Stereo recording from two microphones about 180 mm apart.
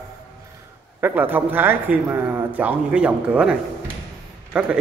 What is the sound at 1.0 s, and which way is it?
Speech, 10° right (ahead or behind).